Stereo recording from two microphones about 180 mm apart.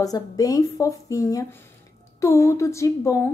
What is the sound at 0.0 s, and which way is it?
A woman's voice, 20° left (ahead or behind).